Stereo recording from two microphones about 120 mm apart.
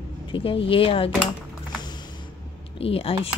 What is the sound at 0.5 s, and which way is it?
Speech, 50° left (ahead or behind).